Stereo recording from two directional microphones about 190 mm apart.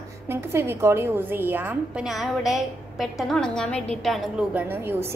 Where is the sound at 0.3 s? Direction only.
10° right (ahead or behind).